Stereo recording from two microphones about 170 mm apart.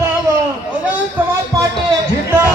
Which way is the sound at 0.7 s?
10° right (ahead or behind).